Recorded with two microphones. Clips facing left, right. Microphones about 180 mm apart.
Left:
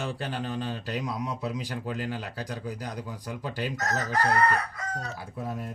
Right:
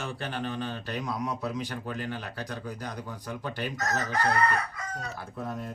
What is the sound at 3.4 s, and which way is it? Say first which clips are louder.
Speech: left 2 dB; 40° left (ahead or behind).